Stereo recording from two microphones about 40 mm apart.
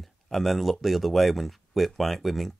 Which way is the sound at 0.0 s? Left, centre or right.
Centre.